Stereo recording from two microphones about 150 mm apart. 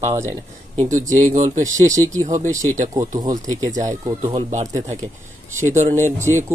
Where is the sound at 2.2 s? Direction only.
50° right (ahead or behind).